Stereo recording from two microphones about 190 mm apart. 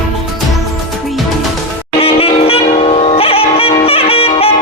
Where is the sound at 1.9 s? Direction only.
30° left (ahead or behind).